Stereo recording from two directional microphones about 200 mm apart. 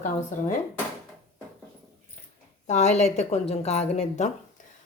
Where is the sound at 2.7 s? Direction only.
35° left (ahead or behind).